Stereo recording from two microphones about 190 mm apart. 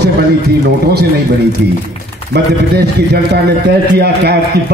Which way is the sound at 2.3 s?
60° right (ahead or behind).